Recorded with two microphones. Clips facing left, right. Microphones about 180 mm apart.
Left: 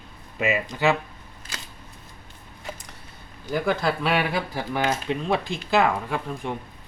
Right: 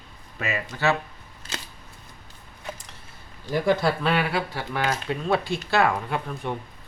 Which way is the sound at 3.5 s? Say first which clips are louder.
Right 2 dB; centre (ahead or behind).